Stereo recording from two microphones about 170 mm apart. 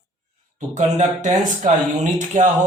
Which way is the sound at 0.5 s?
45° right (ahead or behind).